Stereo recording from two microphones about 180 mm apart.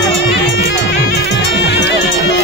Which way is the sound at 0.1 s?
75° left (ahead or behind).